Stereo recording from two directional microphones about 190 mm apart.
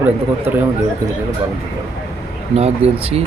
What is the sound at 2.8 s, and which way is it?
Speech, 35° right (ahead or behind).